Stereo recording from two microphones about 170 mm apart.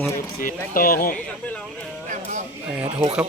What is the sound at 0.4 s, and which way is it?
Speech, 55° left (ahead or behind).